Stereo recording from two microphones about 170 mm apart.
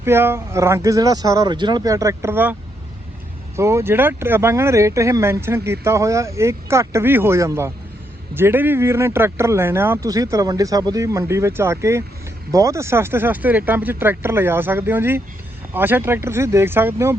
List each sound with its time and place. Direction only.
0.0 s speech: 15° right (ahead or behind)